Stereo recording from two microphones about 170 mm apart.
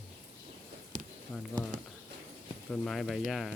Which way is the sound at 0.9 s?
50° right (ahead or behind).